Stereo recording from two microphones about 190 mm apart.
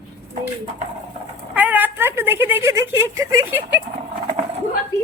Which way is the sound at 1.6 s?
10° right (ahead or behind).